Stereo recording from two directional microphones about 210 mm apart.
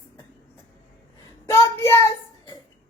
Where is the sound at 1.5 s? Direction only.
15° left (ahead or behind).